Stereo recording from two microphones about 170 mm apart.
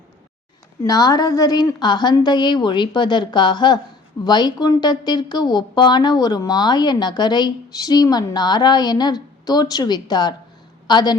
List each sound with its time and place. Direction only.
0.9 s a woman's voice: 20° left (ahead or behind)